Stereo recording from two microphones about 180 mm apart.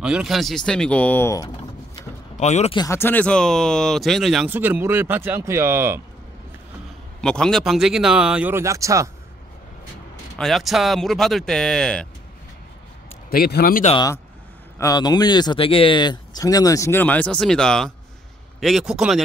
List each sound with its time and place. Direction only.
0.0 s speech: 5° right (ahead or behind); by 1.5 s 15° left (ahead or behind)
2.3 s speech: 40° left (ahead or behind)
2.7 s speech: 20° left (ahead or behind); by 5.9 s 15° right (ahead or behind)
7.2 s speech: 5° left (ahead or behind); by 9.1 s 15° right (ahead or behind)
10.3 s speech: centre (ahead or behind)
13.3 s a man's voice: 60° left (ahead or behind)
13.9 s speech: 20° left (ahead or behind); by 19.2 s centre (ahead or behind)